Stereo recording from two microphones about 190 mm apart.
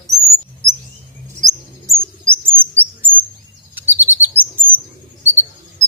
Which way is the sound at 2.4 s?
10° right (ahead or behind).